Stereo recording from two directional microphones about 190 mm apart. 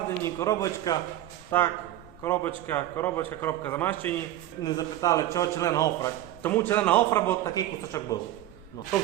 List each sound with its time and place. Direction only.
0.2 s a man's voice: 15° left (ahead or behind)